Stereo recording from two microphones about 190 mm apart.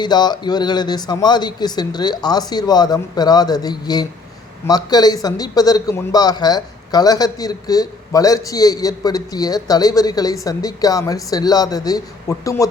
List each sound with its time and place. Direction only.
0.0 s a man's voice: 20° left (ahead or behind)